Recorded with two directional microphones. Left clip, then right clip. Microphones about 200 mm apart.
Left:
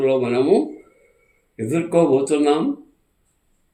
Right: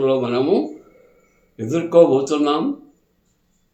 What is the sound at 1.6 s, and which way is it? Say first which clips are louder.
Speech: right 4 dB; 20° left (ahead or behind).